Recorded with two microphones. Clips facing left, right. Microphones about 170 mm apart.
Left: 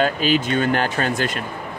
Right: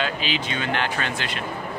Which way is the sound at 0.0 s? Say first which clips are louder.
Left 8 dB; 45° left (ahead or behind).